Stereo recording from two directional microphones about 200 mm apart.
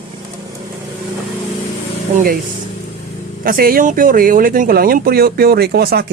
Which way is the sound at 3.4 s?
45° right (ahead or behind).